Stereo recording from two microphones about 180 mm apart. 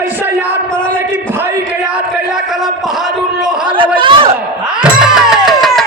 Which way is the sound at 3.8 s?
25° right (ahead or behind).